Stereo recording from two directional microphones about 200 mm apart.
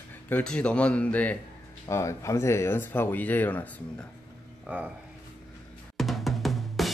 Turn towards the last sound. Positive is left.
turn(degrees=0)  # may be behind; listen again after turning